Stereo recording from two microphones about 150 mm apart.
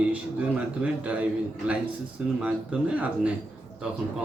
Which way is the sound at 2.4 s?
10° right (ahead or behind).